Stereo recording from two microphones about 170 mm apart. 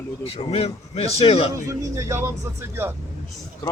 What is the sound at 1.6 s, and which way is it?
Speech, 20° right (ahead or behind).